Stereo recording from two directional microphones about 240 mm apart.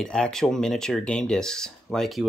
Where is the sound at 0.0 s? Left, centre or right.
Centre.